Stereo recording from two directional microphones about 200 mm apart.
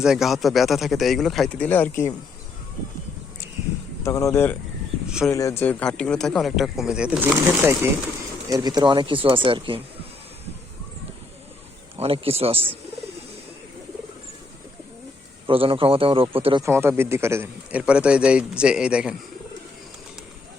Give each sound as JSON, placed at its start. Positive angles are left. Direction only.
{"t": 0.0, "sound": "speech", "side_deg": 0}
{"t": 4.0, "sound": "speech", "side_deg": 15}
{"t": 11.9, "sound": "speech", "side_deg": -30}
{"t": 15.4, "sound": "speech", "side_deg": -25}
{"t": 16.6, "sound": "speech", "side_deg": -10}